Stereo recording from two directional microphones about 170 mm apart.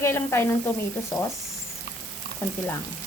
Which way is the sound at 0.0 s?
15° left (ahead or behind).